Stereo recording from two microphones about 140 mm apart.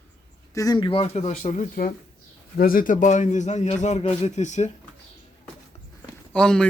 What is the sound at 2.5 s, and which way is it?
Speech, 90° left.